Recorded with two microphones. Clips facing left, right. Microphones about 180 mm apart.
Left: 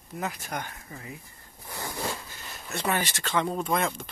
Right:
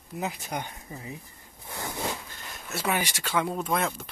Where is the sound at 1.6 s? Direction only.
15° right (ahead or behind).